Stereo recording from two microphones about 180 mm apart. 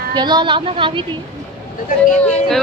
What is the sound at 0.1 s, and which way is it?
Speech, 25° right (ahead or behind).